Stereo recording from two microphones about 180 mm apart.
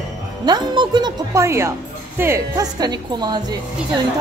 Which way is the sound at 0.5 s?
25° right (ahead or behind).